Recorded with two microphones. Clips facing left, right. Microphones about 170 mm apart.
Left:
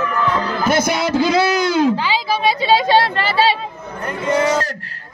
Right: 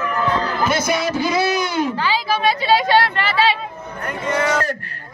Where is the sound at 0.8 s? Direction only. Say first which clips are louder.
Left 3 dB; 80° left.